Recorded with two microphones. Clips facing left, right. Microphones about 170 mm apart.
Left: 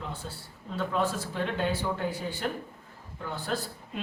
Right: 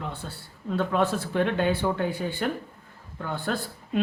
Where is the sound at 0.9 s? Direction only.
65° right (ahead or behind).